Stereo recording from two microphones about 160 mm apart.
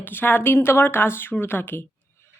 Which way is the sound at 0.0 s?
10° left (ahead or behind).